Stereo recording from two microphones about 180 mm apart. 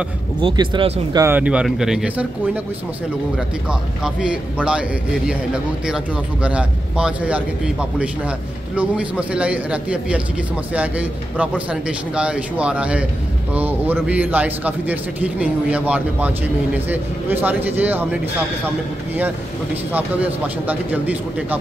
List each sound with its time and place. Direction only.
0.4 s speech: 30° right (ahead or behind)
1.1 s a man's voice: 10° right (ahead or behind)
4.0 s a man's voice: 5° right (ahead or behind)
19.9 s a man's voice: 10° right (ahead or behind)